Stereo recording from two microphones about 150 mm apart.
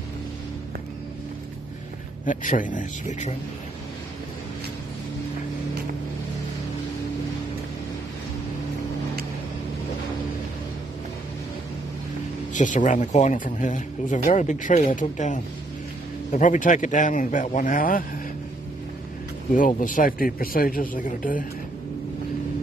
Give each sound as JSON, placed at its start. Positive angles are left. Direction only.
{"t": 2.2, "sound": "a man's voice", "side_deg": 60}
{"t": 12.5, "sound": "a man's voice", "side_deg": 55}
{"t": 19.5, "sound": "a man's voice", "side_deg": 65}